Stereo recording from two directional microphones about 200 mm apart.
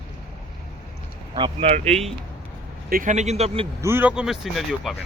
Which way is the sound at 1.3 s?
30° right (ahead or behind).